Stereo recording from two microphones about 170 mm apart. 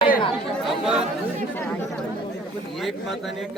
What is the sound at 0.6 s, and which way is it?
Chatter, centre (ahead or behind).